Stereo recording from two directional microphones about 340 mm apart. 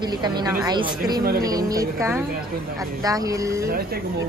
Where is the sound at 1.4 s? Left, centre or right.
Centre.